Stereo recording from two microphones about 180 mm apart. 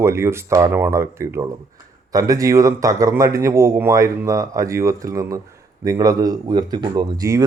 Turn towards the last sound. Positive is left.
turn(degrees=-20)  # may be behind; listen again after turning